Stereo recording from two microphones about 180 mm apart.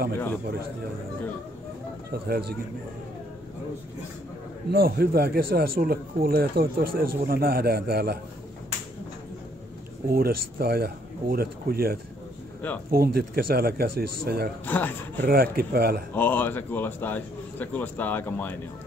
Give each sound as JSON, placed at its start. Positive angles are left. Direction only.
{"t": 2.2, "sound": "speech", "side_deg": -60}
{"t": 4.6, "sound": "speech", "side_deg": -55}
{"t": 10.0, "sound": "speech", "side_deg": -55}
{"t": 14.7, "sound": "a man's voice", "side_deg": 10}
{"t": 15.2, "sound": "speech", "side_deg": -55}
{"t": 16.2, "sound": "a man's voice", "side_deg": 10}